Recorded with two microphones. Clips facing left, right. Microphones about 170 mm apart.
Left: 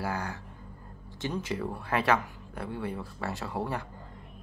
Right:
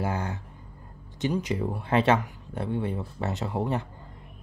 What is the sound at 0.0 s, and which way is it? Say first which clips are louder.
Speech: right 3 dB; 20° right (ahead or behind).